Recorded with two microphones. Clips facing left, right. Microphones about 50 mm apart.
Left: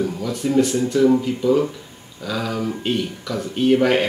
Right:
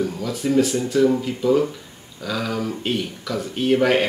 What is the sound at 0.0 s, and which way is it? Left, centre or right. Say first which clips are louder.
Speech: left 1 dB; centre.